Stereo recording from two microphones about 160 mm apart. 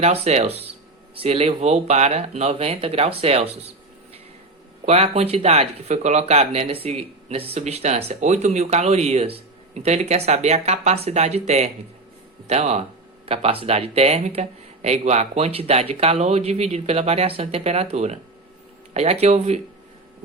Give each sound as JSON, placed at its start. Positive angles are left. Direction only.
{"t": 0.0, "sound": "speech", "side_deg": -45}
{"t": 4.9, "sound": "speech", "side_deg": -40}